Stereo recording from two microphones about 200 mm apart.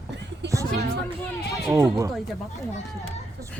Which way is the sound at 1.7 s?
15° right (ahead or behind).